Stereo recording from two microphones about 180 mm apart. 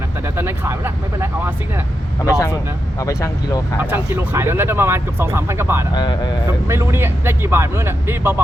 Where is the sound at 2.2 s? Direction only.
20° left (ahead or behind).